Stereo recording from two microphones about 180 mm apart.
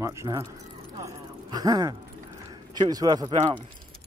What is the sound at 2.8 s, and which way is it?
Speech, 20° right (ahead or behind).